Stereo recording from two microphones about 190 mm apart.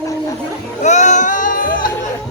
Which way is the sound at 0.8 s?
40° left (ahead or behind).